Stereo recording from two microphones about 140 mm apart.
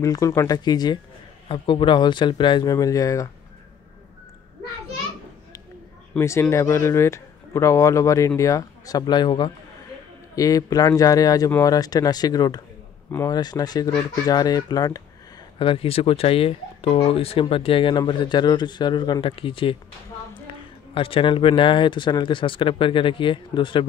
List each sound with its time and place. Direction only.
0.0 s a man's voice: 25° left (ahead or behind)
6.1 s a man's voice: 20° left (ahead or behind)
15.6 s speech: 40° left (ahead or behind)
20.9 s speech: 40° left (ahead or behind)